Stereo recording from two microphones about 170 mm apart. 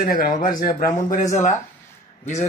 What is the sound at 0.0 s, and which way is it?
Speech, 60° left (ahead or behind).